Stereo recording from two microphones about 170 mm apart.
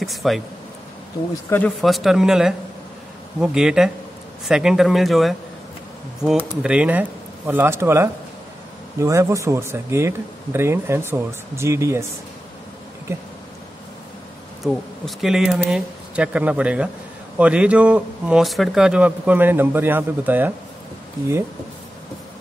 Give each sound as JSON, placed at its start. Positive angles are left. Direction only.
{"t": 0.0, "sound": "speech", "side_deg": 0}
{"t": 1.3, "sound": "speech", "side_deg": 15}
{"t": 1.8, "sound": "speech", "side_deg": 0}
{"t": 6.6, "sound": "speech", "side_deg": -5}
{"t": 14.6, "sound": "speech", "side_deg": 0}